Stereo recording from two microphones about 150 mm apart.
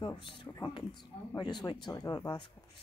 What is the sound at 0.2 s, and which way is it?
Speech, 30° left (ahead or behind).